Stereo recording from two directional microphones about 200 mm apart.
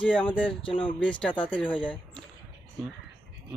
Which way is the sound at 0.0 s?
5° left (ahead or behind).